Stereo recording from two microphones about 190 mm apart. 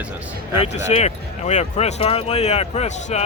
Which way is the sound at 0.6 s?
35° left (ahead or behind).